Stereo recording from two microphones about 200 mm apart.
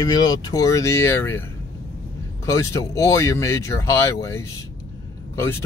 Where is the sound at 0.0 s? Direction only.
20° left (ahead or behind).